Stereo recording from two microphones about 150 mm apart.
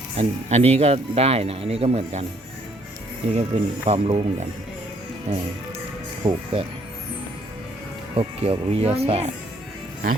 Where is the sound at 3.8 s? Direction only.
45° right (ahead or behind).